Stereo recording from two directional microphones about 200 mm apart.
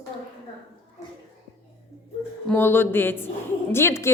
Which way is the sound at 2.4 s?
10° left (ahead or behind).